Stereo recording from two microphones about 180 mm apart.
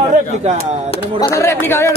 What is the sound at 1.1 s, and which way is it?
Speech, 15° left (ahead or behind).